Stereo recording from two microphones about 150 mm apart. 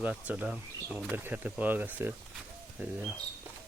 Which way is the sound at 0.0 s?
10° right (ahead or behind).